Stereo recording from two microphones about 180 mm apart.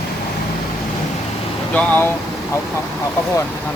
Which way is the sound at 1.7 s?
10° left (ahead or behind).